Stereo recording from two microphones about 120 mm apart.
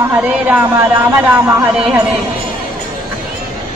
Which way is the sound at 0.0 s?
15° right (ahead or behind).